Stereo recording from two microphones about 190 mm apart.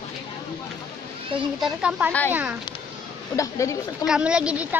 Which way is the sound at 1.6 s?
5° right (ahead or behind).